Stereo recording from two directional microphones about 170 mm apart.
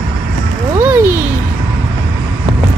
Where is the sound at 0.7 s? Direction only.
10° right (ahead or behind).